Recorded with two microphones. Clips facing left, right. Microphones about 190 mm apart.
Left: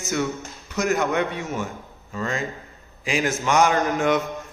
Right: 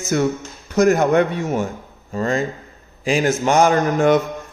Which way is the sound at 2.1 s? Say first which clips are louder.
Right 7 dB; 40° right (ahead or behind).